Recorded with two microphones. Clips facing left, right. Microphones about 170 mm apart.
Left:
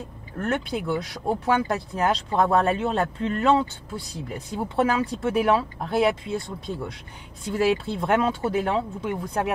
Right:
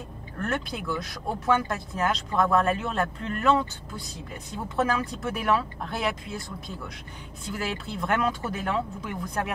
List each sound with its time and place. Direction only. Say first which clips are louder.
0.5 s speech: left 5 dB; 30° left (ahead or behind)